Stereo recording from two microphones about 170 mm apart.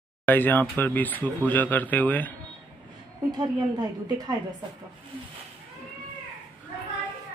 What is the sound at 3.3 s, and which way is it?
A woman's voice, 25° right (ahead or behind).